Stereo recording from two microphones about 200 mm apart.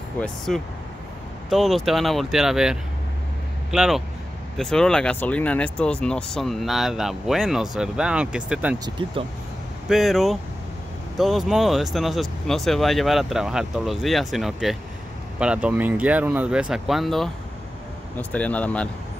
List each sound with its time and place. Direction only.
0.5 s speech: centre (ahead or behind)
8.7 s speech: 20° right (ahead or behind)
9.8 s speech: centre (ahead or behind)